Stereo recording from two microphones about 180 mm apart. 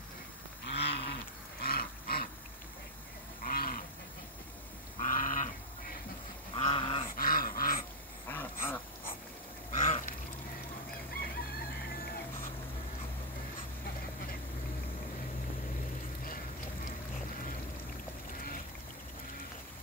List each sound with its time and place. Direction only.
0.7 s livestock: 65° left (ahead or behind)
1.6 s a sound: 60° left (ahead or behind)
3.4 s goat: 50° left (ahead or behind)
5.0 s goat: 45° left (ahead or behind)
6.5 s goose: 30° left (ahead or behind)
7.2 s dog: 50° left (ahead or behind)
8.3 s dog: 10° left (ahead or behind)
9.8 s a sound: 40° left (ahead or behind)